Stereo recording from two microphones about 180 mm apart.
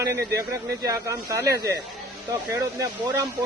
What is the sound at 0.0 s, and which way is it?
A man's voice, 15° right (ahead or behind).